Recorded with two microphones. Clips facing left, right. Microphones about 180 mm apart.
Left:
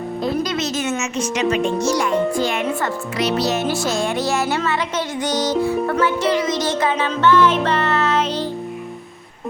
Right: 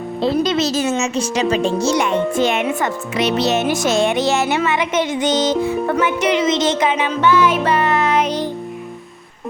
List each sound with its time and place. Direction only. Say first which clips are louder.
0.2 s speech: right 5 dB; 30° right (ahead or behind)
5.9 s music: right 1 dB; 20° right (ahead or behind)